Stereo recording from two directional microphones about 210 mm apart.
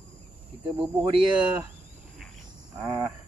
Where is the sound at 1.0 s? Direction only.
25° right (ahead or behind).